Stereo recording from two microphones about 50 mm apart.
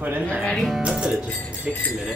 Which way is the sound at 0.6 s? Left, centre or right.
Centre.